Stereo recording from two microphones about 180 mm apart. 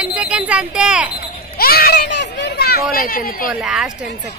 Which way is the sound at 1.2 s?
60° left (ahead or behind).